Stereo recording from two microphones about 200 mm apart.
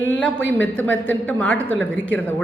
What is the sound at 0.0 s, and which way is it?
A woman's voice, 10° left (ahead or behind).